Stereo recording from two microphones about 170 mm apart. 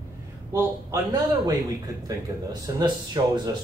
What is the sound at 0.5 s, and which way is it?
A man's voice, 15° right (ahead or behind).